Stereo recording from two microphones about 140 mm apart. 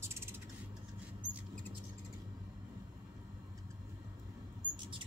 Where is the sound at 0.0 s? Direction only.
15° right (ahead or behind).